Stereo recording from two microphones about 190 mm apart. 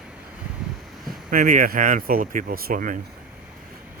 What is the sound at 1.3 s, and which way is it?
Speech, 45° right (ahead or behind).